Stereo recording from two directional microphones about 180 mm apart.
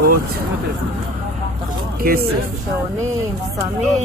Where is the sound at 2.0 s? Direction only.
55° right (ahead or behind).